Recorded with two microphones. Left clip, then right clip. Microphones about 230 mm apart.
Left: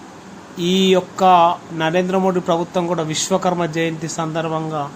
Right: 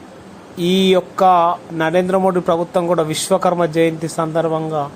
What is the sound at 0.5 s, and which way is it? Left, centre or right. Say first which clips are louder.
A man's voice: right 1 dB; centre.